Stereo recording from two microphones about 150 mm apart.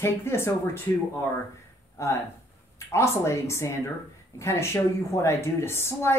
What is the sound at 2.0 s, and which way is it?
Speech, 20° left (ahead or behind).